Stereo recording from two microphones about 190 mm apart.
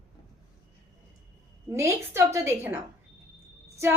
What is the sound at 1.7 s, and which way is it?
A woman's voice, 15° right (ahead or behind).